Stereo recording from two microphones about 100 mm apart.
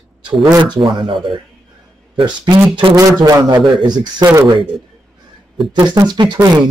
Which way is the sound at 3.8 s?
45° right (ahead or behind).